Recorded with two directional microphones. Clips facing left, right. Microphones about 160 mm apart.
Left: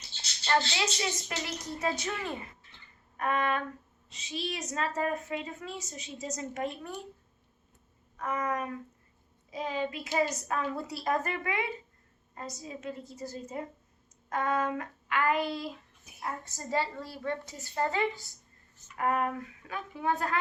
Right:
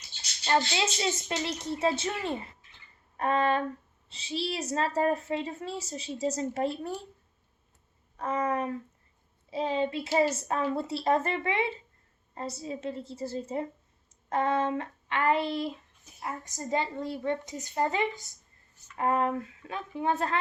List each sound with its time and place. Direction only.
0.4 s a child's voice: 20° right (ahead or behind)
8.1 s a child's voice: 30° right (ahead or behind)
16.2 s a child's voice: 15° right (ahead or behind)